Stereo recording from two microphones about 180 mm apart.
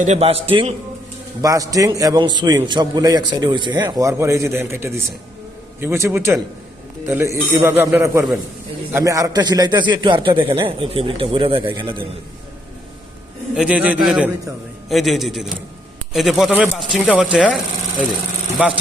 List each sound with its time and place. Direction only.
0.0 s a man's voice: 40° right (ahead or behind)
1.4 s a man's voice: 20° right (ahead or behind)
13.6 s a man's voice: 5° right (ahead or behind)